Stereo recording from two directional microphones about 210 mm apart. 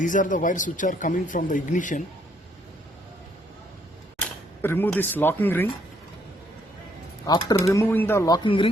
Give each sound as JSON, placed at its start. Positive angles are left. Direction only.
{"t": 0.0, "sound": "speech", "side_deg": 40}
{"t": 4.6, "sound": "speech", "side_deg": 10}
{"t": 7.3, "sound": "speech", "side_deg": 20}